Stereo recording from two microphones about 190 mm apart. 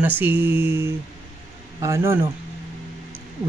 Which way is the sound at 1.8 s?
15° right (ahead or behind).